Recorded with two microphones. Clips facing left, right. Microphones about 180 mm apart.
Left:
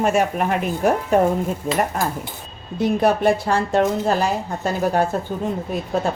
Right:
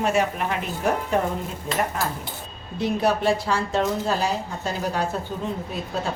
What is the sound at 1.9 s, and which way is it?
A woman's voice, 50° left (ahead or behind).